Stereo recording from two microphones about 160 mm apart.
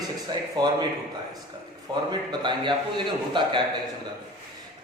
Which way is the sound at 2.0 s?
30° right (ahead or behind).